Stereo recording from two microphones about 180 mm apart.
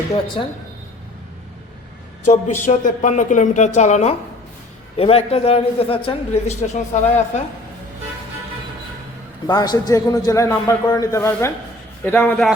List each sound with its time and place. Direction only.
0.4 s a man's voice: 30° left (ahead or behind)
2.2 s a man's voice: 40° left (ahead or behind)
9.5 s a man's voice: 20° left (ahead or behind)